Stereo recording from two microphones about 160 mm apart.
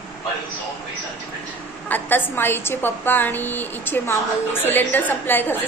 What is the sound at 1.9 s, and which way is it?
A woman's voice, 10° left (ahead or behind).